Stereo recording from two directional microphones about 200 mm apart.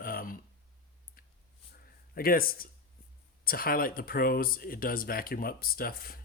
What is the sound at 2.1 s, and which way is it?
Speech, 45° left (ahead or behind).